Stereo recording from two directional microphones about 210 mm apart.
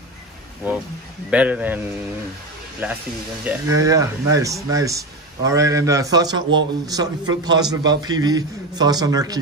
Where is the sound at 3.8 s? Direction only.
15° right (ahead or behind).